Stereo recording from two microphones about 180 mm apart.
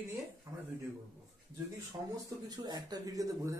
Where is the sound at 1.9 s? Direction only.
20° right (ahead or behind).